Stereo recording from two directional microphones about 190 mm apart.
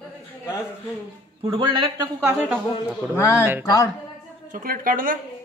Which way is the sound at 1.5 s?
25° right (ahead or behind).